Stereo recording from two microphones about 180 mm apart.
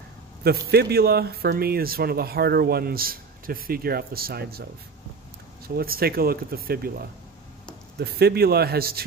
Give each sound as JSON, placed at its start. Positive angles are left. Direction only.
{"t": 0.4, "sound": "speech", "side_deg": -60}
{"t": 5.8, "sound": "speech", "side_deg": -55}